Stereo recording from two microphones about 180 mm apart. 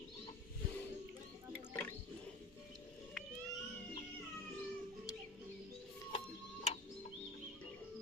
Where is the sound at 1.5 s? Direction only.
10° left (ahead or behind).